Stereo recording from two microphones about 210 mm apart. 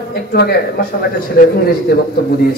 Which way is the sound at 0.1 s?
45° left (ahead or behind).